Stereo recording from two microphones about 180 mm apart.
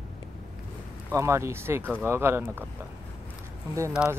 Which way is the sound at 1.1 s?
15° right (ahead or behind).